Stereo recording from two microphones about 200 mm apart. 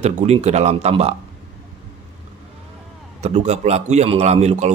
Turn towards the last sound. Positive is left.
turn(degrees=-35)  # may be behind; listen again after turning